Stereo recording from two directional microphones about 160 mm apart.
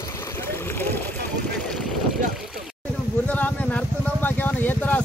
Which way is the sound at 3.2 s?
10° left (ahead or behind).